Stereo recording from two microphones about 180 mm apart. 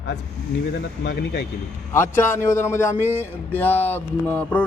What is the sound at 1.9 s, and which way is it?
Speech, 15° left (ahead or behind).